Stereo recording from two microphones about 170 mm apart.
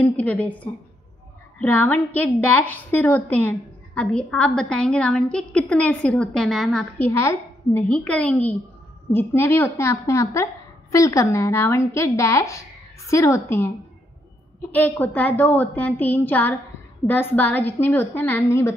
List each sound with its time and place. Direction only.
0.0 s a woman's voice: 10° left (ahead or behind)
7.1 s a woman's voice: 15° left (ahead or behind)
7.9 s a woman's voice: 5° left (ahead or behind)